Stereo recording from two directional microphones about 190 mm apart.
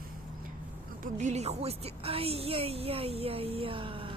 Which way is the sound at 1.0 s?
40° right (ahead or behind).